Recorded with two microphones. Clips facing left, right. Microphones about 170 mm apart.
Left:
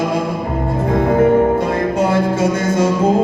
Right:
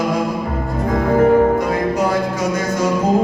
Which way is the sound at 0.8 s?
25° left (ahead or behind).